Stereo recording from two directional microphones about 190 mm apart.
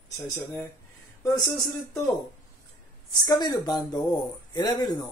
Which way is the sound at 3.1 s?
20° left (ahead or behind).